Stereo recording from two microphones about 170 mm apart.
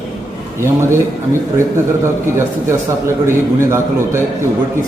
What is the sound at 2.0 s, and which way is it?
A man's voice, 15° right (ahead or behind).